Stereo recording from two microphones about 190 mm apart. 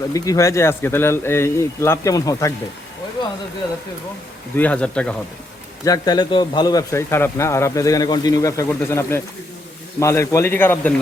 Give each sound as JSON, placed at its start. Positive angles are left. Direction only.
{"t": 0.1, "sound": "a man's voice", "side_deg": 15}
{"t": 4.5, "sound": "a man's voice", "side_deg": 10}
{"t": 5.8, "sound": "a man's voice", "side_deg": 20}